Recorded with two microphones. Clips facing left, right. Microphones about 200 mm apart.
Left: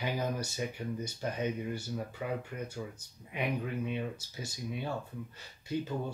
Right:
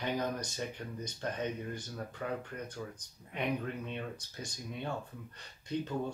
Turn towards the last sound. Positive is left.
turn(degrees=10)  # may be behind; listen again after turning